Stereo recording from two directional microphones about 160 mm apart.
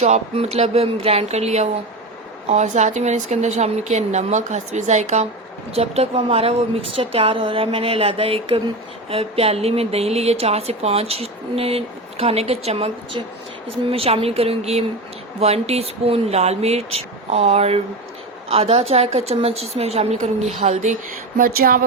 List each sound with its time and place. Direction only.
0.0 s a woman's voice: 45° right (ahead or behind); by 21.8 s 65° right (ahead or behind)